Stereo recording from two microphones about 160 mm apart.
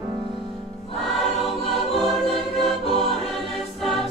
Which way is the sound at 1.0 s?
Centre (ahead or behind).